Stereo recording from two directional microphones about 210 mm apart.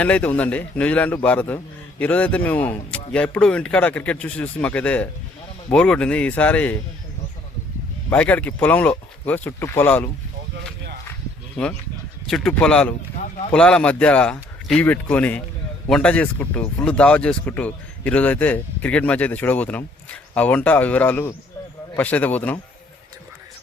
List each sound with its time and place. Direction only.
0.0 s a man's voice: 5° left (ahead or behind)
8.1 s a man's voice: 5° left (ahead or behind)
11.6 s a man's voice: 5° left (ahead or behind)